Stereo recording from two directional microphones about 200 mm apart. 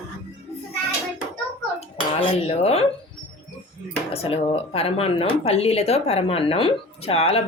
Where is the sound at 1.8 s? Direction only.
30° left (ahead or behind).